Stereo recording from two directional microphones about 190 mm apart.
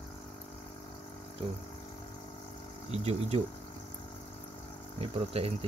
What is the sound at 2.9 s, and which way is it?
Speech, 35° right (ahead or behind).